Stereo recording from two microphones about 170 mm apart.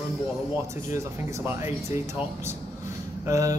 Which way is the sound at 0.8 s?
15° right (ahead or behind).